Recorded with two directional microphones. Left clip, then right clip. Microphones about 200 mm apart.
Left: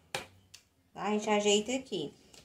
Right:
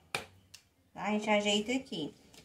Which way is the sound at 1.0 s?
35° left (ahead or behind).